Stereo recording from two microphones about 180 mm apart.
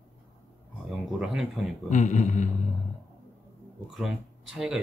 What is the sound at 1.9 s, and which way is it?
Speech, 45° left (ahead or behind).